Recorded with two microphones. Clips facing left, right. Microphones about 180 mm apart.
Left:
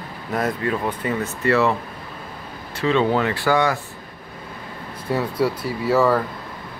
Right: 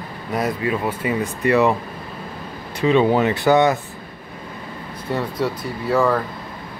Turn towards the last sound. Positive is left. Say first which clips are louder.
# left 1 dB
turn(degrees=5)  # may be behind; listen again after turning